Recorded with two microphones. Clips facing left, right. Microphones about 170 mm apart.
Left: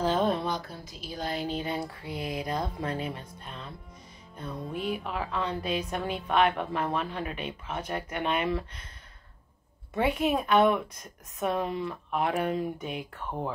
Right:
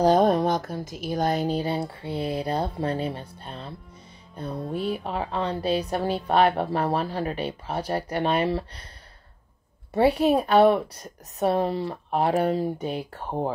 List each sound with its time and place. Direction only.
0.0 s speech: 40° right (ahead or behind)
9.9 s speech: 35° right (ahead or behind)